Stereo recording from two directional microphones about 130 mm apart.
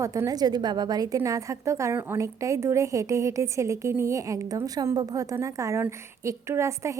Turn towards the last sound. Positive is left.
turn(degrees=-20)  # may be behind; listen again after turning